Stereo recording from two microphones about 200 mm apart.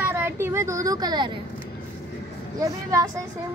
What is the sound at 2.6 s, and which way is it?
Speech, 15° right (ahead or behind).